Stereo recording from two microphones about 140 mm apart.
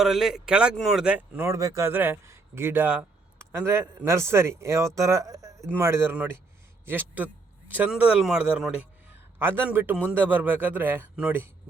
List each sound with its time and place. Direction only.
0.0 s a man's voice: centre (ahead or behind)